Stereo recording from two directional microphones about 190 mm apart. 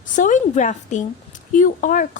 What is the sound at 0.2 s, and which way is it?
Speech, 40° left (ahead or behind).